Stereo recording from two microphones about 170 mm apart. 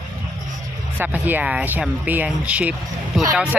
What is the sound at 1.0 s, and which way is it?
Speech, 10° right (ahead or behind).